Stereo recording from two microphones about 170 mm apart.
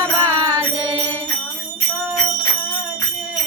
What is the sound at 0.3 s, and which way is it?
Mantra, 20° right (ahead or behind).